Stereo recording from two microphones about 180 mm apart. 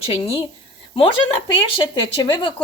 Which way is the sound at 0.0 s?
30° left (ahead or behind).